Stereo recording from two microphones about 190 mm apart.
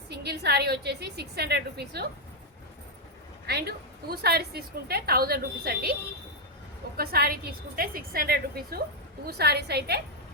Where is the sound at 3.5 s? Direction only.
55° right (ahead or behind).